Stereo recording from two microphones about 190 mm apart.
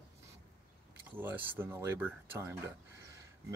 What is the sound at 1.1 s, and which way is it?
Speech, 10° right (ahead or behind).